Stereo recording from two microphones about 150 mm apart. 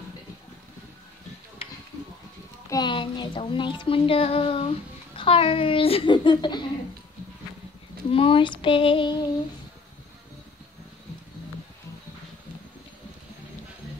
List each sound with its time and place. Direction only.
1.6 s a sound: 40° left (ahead or behind)
2.7 s music: 30° left (ahead or behind)
8.1 s music: 35° left (ahead or behind)